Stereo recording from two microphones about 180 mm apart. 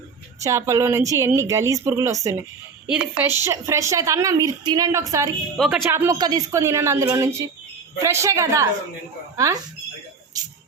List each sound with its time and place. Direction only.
0.4 s a woman's voice: 15° right (ahead or behind)
2.8 s a woman's voice: 5° right (ahead or behind)